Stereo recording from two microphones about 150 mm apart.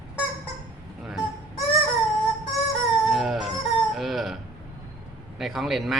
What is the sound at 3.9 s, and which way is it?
Speech, centre (ahead or behind).